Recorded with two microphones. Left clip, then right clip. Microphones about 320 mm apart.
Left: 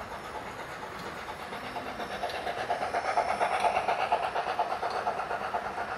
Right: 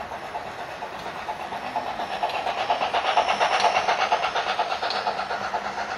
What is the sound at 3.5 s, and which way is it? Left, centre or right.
Train, right.